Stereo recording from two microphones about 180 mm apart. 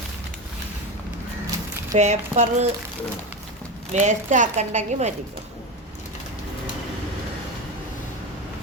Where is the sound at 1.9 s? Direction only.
40° right (ahead or behind).